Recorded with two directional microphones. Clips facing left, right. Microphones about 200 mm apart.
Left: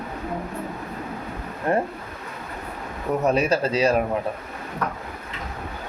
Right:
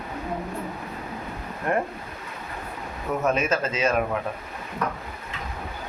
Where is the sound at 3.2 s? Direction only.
35° left (ahead or behind).